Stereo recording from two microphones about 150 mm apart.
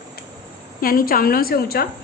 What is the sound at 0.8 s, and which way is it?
A woman's voice, 75° left (ahead or behind).